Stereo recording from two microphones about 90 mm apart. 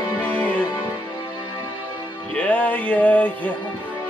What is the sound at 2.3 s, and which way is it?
Music, 15° left (ahead or behind).